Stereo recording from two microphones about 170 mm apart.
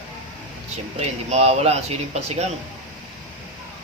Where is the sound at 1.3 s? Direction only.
40° right (ahead or behind).